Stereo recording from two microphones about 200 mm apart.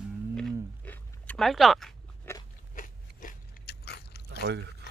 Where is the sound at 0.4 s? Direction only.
5° left (ahead or behind).